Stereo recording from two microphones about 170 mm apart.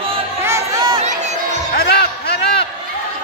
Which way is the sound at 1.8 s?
70° left (ahead or behind).